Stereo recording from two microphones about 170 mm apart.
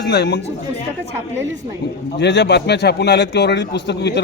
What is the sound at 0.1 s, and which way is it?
Speech, 75° left (ahead or behind).